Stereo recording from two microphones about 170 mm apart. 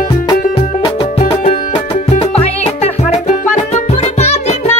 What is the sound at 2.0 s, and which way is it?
Music, 35° left (ahead or behind).